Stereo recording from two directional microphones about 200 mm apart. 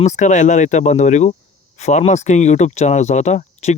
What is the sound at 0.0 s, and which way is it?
Speech, 35° left (ahead or behind).